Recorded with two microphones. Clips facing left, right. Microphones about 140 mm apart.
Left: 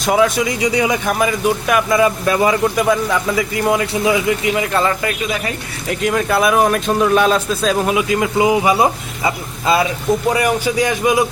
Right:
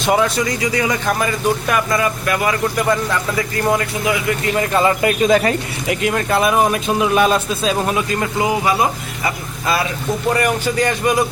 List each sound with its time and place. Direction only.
0.0 s speech: centre (ahead or behind)
0.3 s speech: 15° left (ahead or behind)
2.0 s speech: 25° left (ahead or behind)
2.7 s speech: 10° left (ahead or behind)
4.0 s speech: 25° left (ahead or behind)
4.4 s speech: 5° left (ahead or behind)
4.8 s speech: 20° right (ahead or behind)
5.2 s speech: 45° right (ahead or behind)
5.9 s speech: 5° right (ahead or behind)
8.4 s speech: 20° left (ahead or behind)
10.3 s speech: 10° left (ahead or behind)